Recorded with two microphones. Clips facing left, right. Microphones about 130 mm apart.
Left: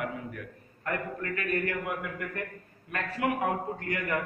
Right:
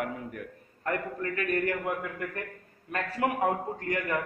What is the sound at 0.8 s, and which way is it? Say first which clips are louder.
Speech: right 2 dB; 30° right (ahead or behind).